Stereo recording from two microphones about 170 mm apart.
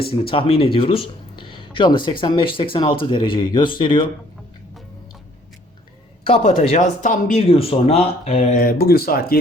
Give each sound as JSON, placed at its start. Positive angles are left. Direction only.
{"t": 0.1, "sound": "speech", "side_deg": 30}
{"t": 6.2, "sound": "speech", "side_deg": 35}
{"t": 7.4, "sound": "speech", "side_deg": 35}
{"t": 8.5, "sound": "speech", "side_deg": 60}